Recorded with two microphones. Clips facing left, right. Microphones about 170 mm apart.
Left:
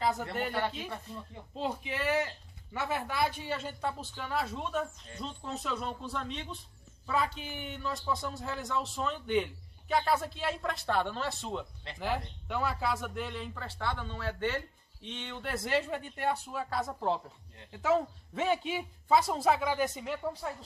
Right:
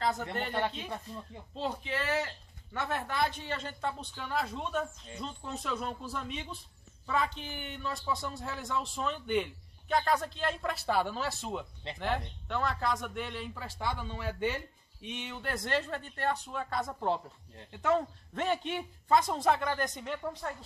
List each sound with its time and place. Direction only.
0.0 s speech: 10° left (ahead or behind)
12.0 s speech: 5° left (ahead or behind)